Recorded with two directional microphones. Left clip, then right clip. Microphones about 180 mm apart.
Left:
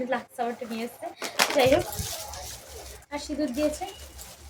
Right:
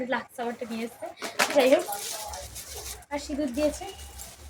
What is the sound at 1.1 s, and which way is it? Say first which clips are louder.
Speech: left 1 dB; 20° left (ahead or behind).